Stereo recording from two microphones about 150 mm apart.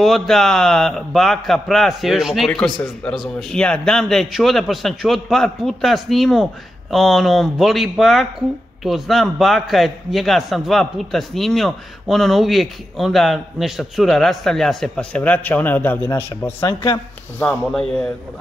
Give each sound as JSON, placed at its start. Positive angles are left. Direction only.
{"t": 0.0, "sound": "a man's voice", "side_deg": 0}
{"t": 16.6, "sound": "speech", "side_deg": 30}
{"t": 17.4, "sound": "a man's voice", "side_deg": 5}